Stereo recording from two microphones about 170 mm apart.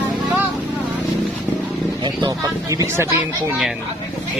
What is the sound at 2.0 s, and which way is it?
Speech, 25° right (ahead or behind).